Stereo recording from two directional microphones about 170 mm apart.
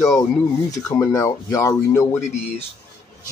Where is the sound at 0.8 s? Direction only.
20° left (ahead or behind).